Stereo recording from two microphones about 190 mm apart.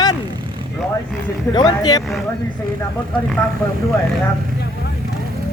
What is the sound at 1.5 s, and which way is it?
Speech, 20° left (ahead or behind).